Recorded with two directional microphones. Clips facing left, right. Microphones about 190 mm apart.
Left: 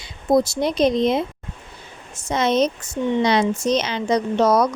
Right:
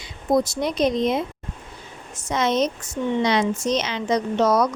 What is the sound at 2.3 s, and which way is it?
A woman's voice, 30° left (ahead or behind).